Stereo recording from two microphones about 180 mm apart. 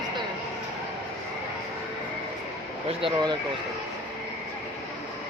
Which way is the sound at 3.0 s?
30° right (ahead or behind).